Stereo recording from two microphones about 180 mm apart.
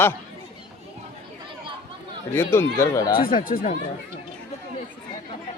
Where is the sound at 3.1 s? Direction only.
50° left (ahead or behind).